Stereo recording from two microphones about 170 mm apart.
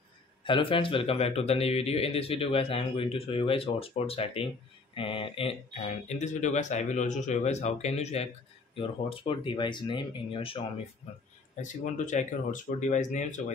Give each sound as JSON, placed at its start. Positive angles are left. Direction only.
{"t": 0.4, "sound": "speech", "side_deg": 30}
{"t": 6.0, "sound": "speech", "side_deg": 45}
{"t": 11.6, "sound": "speech", "side_deg": 45}